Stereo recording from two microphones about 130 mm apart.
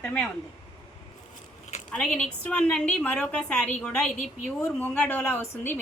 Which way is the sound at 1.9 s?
10° left (ahead or behind).